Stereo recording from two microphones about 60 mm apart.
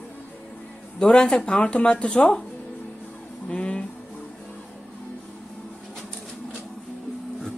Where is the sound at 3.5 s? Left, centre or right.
Centre.